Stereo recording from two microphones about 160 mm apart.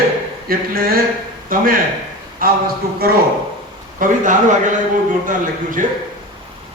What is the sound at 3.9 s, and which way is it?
Speech, 55° right (ahead or behind).